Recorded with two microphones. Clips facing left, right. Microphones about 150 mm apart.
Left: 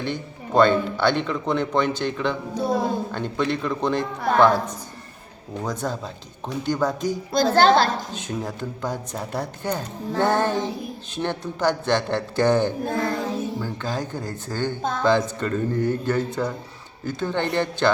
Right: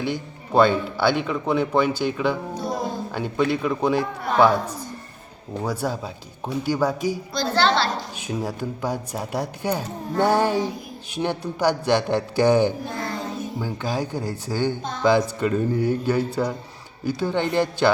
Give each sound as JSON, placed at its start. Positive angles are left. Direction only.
{"t": 0.0, "sound": "speech", "side_deg": -10}
{"t": 5.6, "sound": "speech", "side_deg": -10}
{"t": 7.5, "sound": "a woman's voice", "side_deg": 45}
{"t": 8.1, "sound": "speech", "side_deg": -10}
{"t": 12.8, "sound": "child singing", "side_deg": 50}
{"t": 13.6, "sound": "speech", "side_deg": -10}
{"t": 14.8, "sound": "speech", "side_deg": 50}
{"t": 15.4, "sound": "speech", "side_deg": -10}